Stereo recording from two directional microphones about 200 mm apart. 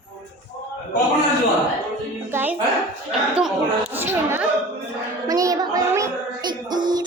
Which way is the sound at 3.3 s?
10° right (ahead or behind).